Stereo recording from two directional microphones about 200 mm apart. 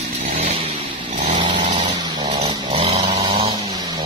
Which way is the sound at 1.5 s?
25° right (ahead or behind).